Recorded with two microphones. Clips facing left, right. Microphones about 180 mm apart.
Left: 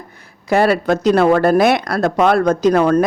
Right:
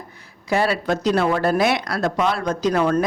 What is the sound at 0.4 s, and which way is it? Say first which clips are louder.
Speech: left 6 dB; 55° left (ahead or behind).